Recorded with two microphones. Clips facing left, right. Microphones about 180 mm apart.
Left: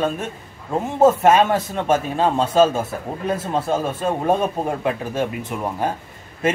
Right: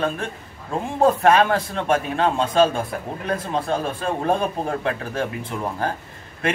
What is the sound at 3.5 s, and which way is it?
Speech, 5° left (ahead or behind).